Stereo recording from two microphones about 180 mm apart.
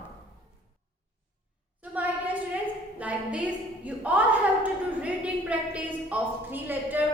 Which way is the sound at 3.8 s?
10° right (ahead or behind).